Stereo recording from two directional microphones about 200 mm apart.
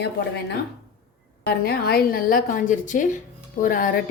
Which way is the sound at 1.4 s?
50° left (ahead or behind).